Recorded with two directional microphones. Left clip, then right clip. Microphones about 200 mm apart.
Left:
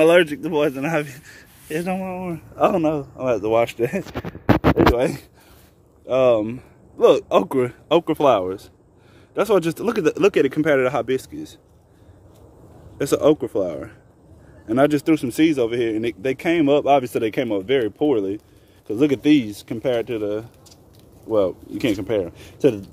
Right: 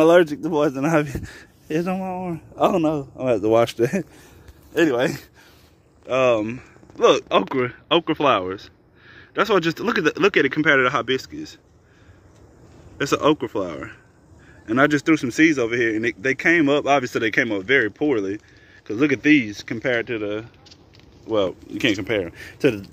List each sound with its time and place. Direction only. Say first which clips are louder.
0.0 s a man's voice: even; 20° right (ahead or behind); by 4.0 s 35° right (ahead or behind)
4.9 s speech: left 1 dB; centre (ahead or behind)
12.9 s speech: left 2 dB; centre (ahead or behind)